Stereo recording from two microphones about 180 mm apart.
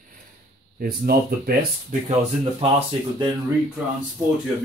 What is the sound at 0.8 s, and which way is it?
Speech, 55° right (ahead or behind).